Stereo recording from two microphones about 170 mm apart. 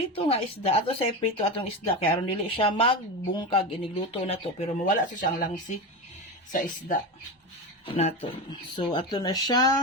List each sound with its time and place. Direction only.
0.2 s speech: 35° left (ahead or behind); by 6.9 s 50° left (ahead or behind)
7.9 s speech: 40° left (ahead or behind)